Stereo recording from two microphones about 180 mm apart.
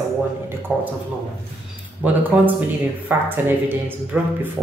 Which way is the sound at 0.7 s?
10° right (ahead or behind).